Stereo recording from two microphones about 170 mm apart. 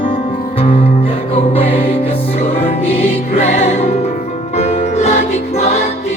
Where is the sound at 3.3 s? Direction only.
40° left (ahead or behind).